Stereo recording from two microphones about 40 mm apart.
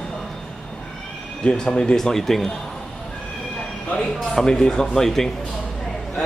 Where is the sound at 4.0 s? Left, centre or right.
Centre.